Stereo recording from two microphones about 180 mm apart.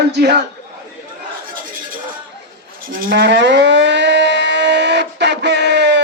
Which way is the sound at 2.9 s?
60° right (ahead or behind).